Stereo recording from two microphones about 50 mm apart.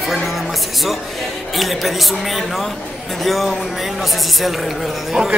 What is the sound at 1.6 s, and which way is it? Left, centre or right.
A man's voice, centre.